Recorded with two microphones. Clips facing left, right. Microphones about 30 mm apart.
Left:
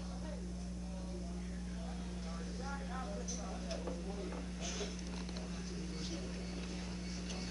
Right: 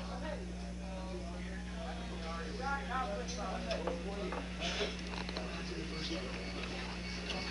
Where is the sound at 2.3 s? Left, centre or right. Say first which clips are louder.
Right 8 dB; right.